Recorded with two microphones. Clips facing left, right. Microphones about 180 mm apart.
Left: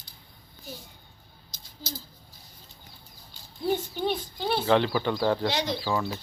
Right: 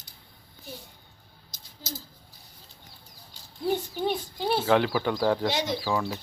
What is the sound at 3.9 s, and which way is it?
Speech, 5° right (ahead or behind).